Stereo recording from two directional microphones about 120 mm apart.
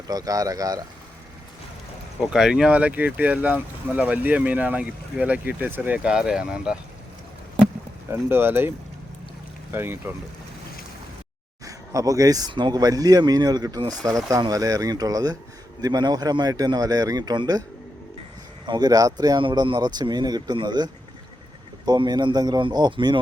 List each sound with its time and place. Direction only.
0.1 s speech: 30° right (ahead or behind)
2.3 s speech: 5° right (ahead or behind)
8.1 s speech: 20° right (ahead or behind)
9.7 s speech: 20° right (ahead or behind)
11.6 s speech: 30° right (ahead or behind)
18.6 s speech: 35° right (ahead or behind)